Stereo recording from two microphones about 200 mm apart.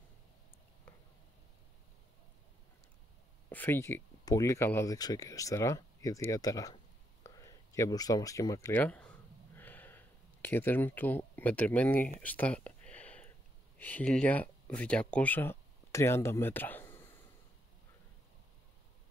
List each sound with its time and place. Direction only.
3.4 s speech: 10° left (ahead or behind)
9.6 s a sound: 10° left (ahead or behind)
13.7 s speech: 10° left (ahead or behind)